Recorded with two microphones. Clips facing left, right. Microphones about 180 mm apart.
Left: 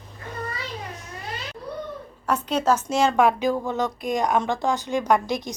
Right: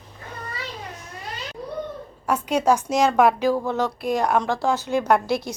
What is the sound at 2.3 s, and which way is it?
A woman's voice, 10° right (ahead or behind).